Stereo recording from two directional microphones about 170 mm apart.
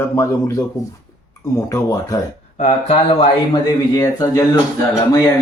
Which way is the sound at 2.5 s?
40° left (ahead or behind).